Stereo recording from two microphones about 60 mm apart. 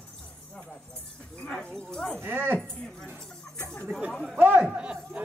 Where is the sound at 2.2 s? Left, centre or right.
Right.